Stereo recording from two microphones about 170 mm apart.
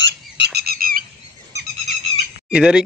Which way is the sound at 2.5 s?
5° right (ahead or behind).